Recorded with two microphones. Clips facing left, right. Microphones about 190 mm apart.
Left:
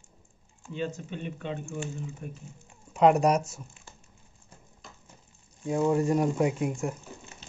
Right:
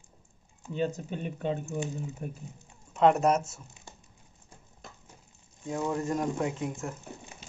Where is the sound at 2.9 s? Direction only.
5° left (ahead or behind).